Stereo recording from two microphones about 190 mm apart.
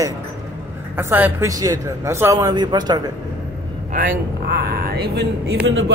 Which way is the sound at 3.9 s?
50° right (ahead or behind).